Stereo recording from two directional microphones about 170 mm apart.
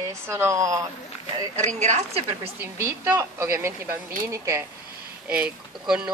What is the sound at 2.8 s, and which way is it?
Speech, 15° right (ahead or behind).